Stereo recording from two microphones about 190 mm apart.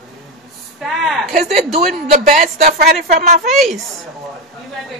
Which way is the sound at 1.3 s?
35° right (ahead or behind).